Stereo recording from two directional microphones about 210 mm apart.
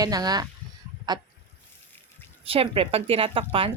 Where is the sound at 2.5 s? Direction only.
25° right (ahead or behind).